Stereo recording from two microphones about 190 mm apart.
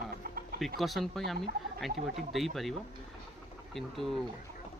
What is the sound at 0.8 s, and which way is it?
Speech, centre (ahead or behind).